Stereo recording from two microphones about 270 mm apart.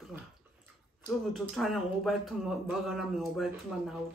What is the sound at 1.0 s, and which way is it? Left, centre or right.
Speech, centre.